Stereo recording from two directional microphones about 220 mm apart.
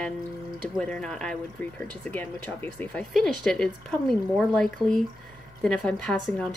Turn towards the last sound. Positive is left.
turn(degrees=5)  # may be behind; listen again after turning